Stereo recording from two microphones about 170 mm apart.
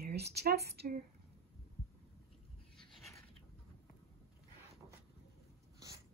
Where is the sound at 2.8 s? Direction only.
Centre (ahead or behind).